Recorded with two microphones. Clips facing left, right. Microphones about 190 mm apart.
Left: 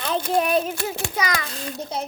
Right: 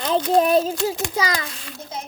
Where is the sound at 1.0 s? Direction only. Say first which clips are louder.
Right 2 dB; 30° right (ahead or behind).